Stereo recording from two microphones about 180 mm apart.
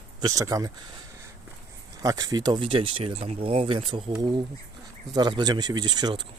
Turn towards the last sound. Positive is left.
turn(degrees=-25)  # may be behind; listen again after turning